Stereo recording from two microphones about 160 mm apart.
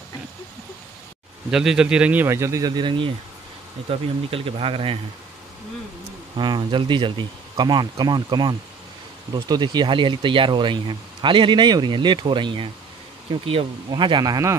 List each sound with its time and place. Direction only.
1.5 s speech: 5° right (ahead or behind); by 4.9 s 35° right (ahead or behind)
6.3 s speech: 30° right (ahead or behind)